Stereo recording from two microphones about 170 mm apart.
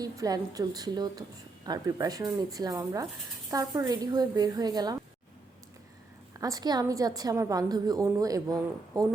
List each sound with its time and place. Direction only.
0.0 s a woman's voice: 20° right (ahead or behind)
6.4 s a woman's voice: 20° right (ahead or behind)